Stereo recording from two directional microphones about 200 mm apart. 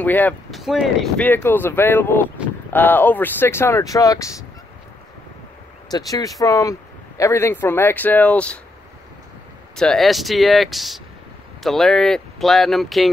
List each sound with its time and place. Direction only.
0.0 s speech: 10° left (ahead or behind)
5.9 s speech: 20° left (ahead or behind)
9.8 s speech: centre (ahead or behind)